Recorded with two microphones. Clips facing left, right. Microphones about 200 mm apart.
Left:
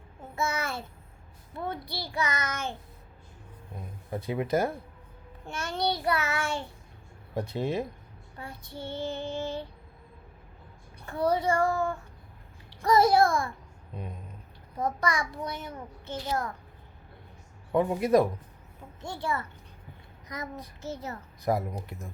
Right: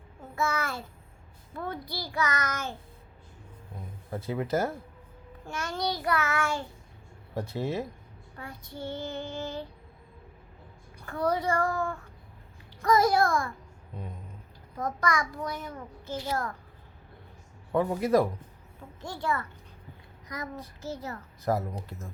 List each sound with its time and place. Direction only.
0.3 s a child's voice: 25° left (ahead or behind)
4.1 s a child's voice: 15° left (ahead or behind)
5.5 s a child's voice: 25° left (ahead or behind)
7.3 s a child's voice: 15° left (ahead or behind)
8.4 s a child's voice: 30° left (ahead or behind)
11.0 s a child's voice: 25° left (ahead or behind)
13.9 s a child's voice: 15° left (ahead or behind)
14.8 s a child's voice: 30° left (ahead or behind)
17.7 s a child's voice: 20° left (ahead or behind)